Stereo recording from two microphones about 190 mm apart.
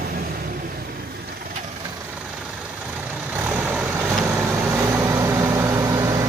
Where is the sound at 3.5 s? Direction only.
10° right (ahead or behind).